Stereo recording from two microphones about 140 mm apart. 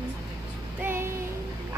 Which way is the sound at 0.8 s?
15° right (ahead or behind).